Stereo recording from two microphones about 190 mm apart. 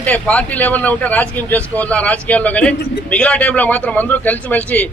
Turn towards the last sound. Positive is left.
turn(degrees=10)  # may be behind; listen again after turning